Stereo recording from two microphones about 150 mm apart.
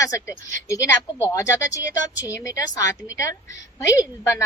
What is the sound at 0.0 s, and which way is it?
A woman's voice, 20° left (ahead or behind).